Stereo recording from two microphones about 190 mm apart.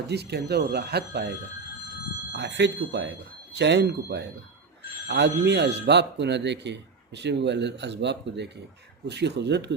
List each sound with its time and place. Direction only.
0.1 s speech: 60° right (ahead or behind)
2.3 s speech: 65° right (ahead or behind)